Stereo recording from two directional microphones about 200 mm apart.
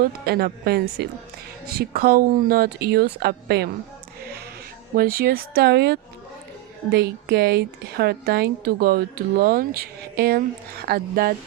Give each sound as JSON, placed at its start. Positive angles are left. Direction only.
{"t": 0.0, "sound": "a woman's voice", "side_deg": -50}
{"t": 4.9, "sound": "a woman's voice", "side_deg": -50}